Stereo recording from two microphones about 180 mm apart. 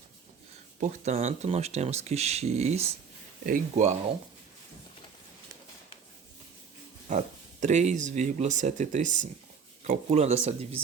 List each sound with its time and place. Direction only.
0.8 s speech: 40° right (ahead or behind)
7.1 s speech: 40° right (ahead or behind)